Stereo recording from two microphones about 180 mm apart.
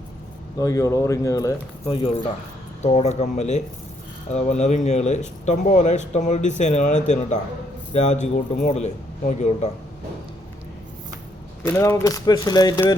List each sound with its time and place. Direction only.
0.6 s speech: 15° left (ahead or behind)
2.8 s speech: 40° left (ahead or behind)
11.6 s speech: 10° left (ahead or behind)